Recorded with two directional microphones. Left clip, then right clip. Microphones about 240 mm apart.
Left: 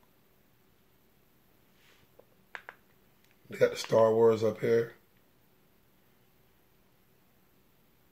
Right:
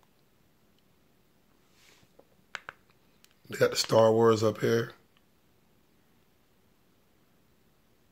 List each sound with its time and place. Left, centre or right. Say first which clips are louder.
3.4 s speech: right 1 dB; right